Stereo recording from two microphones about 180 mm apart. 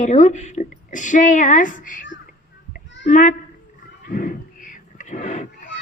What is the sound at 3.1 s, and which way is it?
Speech, 50° left (ahead or behind).